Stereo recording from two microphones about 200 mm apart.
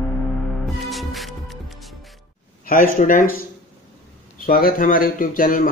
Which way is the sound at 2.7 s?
45° left (ahead or behind).